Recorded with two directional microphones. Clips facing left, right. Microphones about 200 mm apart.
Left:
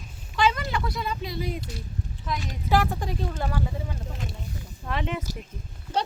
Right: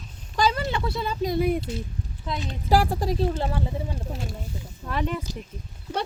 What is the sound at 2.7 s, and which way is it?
Speech, 40° right (ahead or behind).